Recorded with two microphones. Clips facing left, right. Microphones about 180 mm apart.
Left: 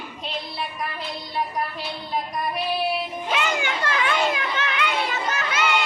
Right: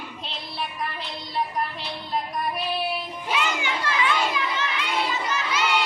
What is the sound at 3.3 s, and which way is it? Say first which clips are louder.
Children playing: left 1 dB; 55° left (ahead or behind).